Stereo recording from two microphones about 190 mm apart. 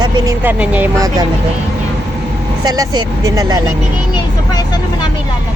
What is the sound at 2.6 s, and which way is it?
Speech, 20° right (ahead or behind).